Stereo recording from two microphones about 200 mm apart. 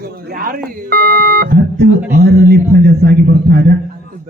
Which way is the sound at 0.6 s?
50° right (ahead or behind).